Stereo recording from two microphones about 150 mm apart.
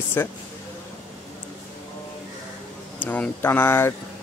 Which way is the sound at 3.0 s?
10° left (ahead or behind).